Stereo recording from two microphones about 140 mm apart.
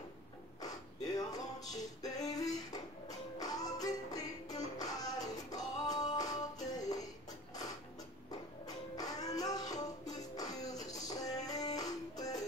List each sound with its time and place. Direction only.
0.6 s music: 25° left (ahead or behind)
8.6 s music: 25° left (ahead or behind)